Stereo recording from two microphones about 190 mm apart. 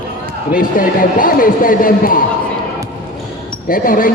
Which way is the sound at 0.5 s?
45° left (ahead or behind).